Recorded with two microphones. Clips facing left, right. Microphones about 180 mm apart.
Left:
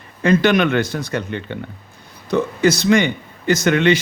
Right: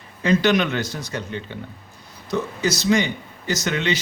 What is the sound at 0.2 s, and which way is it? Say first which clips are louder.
A man's voice: left 4 dB; 55° left (ahead or behind).